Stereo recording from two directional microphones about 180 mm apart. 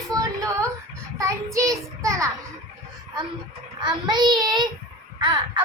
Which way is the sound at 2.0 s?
20° right (ahead or behind).